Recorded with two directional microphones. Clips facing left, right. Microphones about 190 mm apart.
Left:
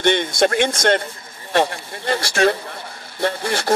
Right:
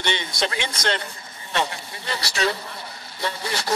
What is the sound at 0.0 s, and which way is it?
Speech, 50° left (ahead or behind).